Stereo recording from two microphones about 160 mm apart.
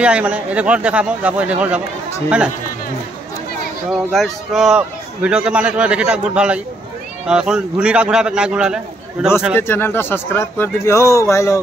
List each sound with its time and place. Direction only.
0.0 s a man's voice: 5° right (ahead or behind)
4.1 s a man's voice: centre (ahead or behind)
9.6 s a man's voice: 15° left (ahead or behind)